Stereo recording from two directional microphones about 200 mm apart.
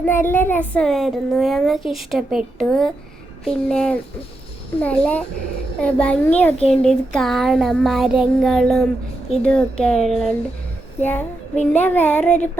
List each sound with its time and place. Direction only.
0.0 s a child's voice: 10° left (ahead or behind)
4.8 s child singing: 5° left (ahead or behind)
5.8 s a child's voice: 5° left (ahead or behind)
11.0 s child singing: 10° left (ahead or behind)